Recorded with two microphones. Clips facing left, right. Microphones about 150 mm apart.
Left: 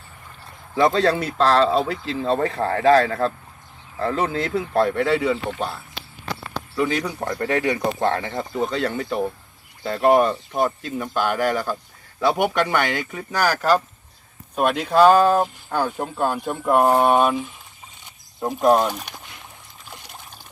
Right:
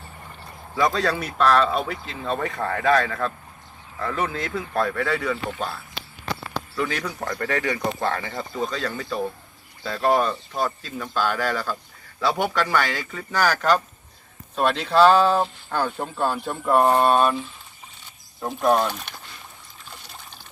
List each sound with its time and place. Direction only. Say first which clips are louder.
0.8 s speech: left 4 dB; 30° left (ahead or behind)